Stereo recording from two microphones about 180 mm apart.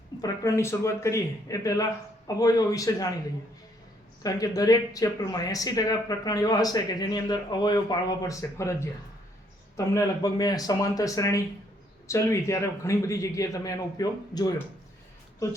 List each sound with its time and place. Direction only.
0.2 s speech: 15° left (ahead or behind)
4.2 s a man's voice: 20° left (ahead or behind)